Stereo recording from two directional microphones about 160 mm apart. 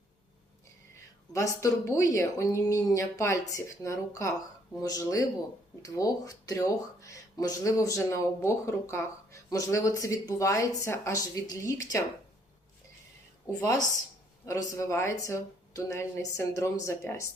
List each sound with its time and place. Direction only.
1.3 s speech: 20° left (ahead or behind)
13.6 s speech: 20° left (ahead or behind)